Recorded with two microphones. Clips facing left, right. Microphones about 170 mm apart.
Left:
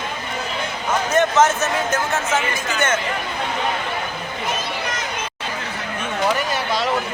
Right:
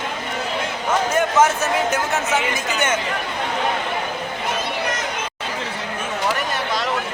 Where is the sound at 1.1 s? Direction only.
10° right (ahead or behind).